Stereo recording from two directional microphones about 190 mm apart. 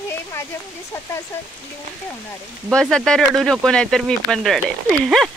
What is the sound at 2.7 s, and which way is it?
Speech, 5° left (ahead or behind).